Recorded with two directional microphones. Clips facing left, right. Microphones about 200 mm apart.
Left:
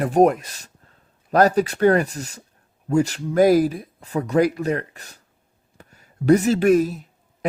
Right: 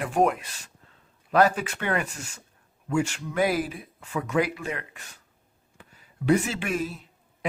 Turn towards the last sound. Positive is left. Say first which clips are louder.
# left 13 dB
turn(degrees=40)  # may be behind; listen again after turning